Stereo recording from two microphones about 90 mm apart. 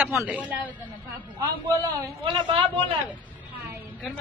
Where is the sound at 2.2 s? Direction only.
75° right (ahead or behind).